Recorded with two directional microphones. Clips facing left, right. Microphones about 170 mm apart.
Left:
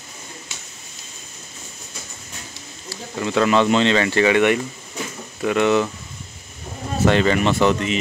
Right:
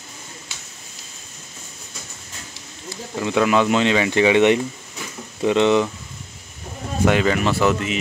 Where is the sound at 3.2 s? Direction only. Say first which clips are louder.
Left 1 dB; 10° right (ahead or behind).